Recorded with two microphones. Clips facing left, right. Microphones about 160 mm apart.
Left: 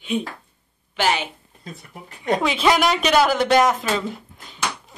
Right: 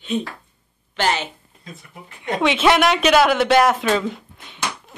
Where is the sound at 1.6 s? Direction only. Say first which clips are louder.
Left 2 dB; 35° left (ahead or behind).